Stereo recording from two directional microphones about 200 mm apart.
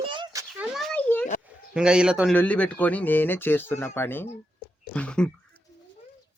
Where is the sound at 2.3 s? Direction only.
5° left (ahead or behind).